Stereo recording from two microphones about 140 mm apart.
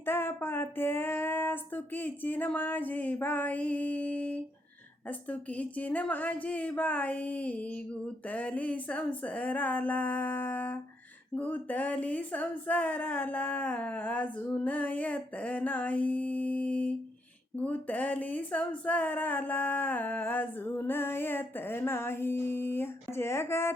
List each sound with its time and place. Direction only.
0.0 s speech: 15° left (ahead or behind)